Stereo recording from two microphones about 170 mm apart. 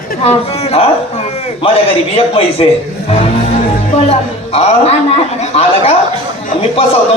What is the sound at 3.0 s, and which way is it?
Music, 35° left (ahead or behind).